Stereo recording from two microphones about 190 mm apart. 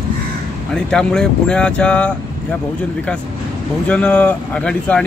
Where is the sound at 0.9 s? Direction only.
5° left (ahead or behind).